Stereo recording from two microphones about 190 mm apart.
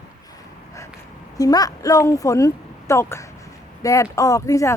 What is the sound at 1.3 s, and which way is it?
A woman's voice, 20° left (ahead or behind).